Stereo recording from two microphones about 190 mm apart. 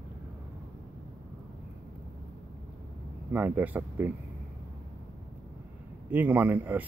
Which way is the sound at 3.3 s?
10° right (ahead or behind).